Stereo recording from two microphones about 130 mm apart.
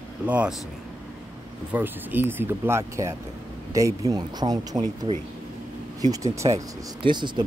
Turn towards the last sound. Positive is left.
turn(degrees=-35)  # may be behind; listen again after turning